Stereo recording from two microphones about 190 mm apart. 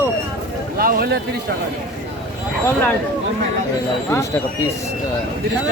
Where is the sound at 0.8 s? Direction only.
50° right (ahead or behind).